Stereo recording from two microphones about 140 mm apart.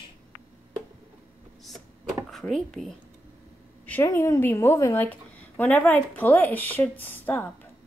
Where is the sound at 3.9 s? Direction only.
20° left (ahead or behind).